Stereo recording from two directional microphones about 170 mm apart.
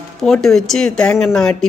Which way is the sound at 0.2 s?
Centre (ahead or behind).